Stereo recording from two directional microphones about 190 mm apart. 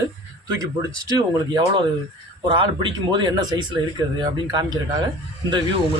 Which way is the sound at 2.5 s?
25° right (ahead or behind).